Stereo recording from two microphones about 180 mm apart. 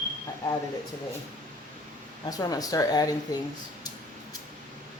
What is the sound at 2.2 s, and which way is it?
Speech, 20° left (ahead or behind).